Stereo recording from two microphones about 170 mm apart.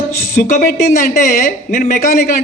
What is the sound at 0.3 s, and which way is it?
A man's voice, 45° left (ahead or behind).